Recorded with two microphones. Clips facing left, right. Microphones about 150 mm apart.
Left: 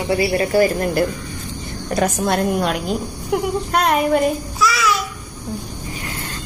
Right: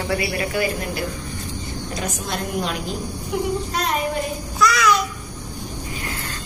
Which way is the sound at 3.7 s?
60° left (ahead or behind).